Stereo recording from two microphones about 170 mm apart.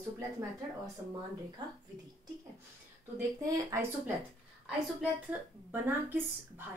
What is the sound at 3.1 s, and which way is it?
Speech, 20° right (ahead or behind).